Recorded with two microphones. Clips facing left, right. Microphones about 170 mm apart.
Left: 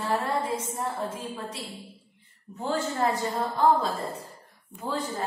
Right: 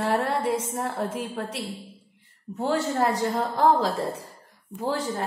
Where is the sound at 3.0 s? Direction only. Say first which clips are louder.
Right 2 dB; 85° right.